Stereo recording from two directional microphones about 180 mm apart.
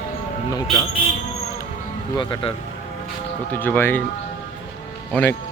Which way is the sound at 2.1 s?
25° left (ahead or behind).